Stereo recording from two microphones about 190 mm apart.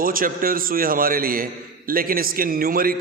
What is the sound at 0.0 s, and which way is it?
A man's voice, 50° right (ahead or behind).